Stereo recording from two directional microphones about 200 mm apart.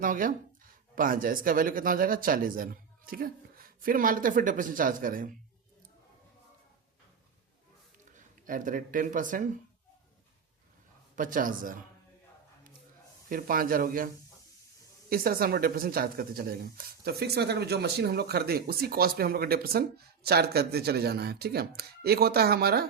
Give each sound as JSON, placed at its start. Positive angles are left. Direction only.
{"t": 0.0, "sound": "speech", "side_deg": -45}
{"t": 7.9, "sound": "speech", "side_deg": -40}
{"t": 11.1, "sound": "speech", "side_deg": -40}
{"t": 13.2, "sound": "speech", "side_deg": -45}
{"t": 15.1, "sound": "speech", "side_deg": -45}